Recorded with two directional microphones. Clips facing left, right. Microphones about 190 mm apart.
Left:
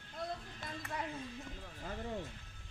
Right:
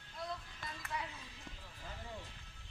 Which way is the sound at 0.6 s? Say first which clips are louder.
Left 4 dB; 50° left (ahead or behind).